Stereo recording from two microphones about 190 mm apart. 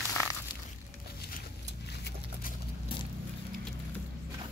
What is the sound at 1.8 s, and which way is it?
Clip-clop, 60° left (ahead or behind).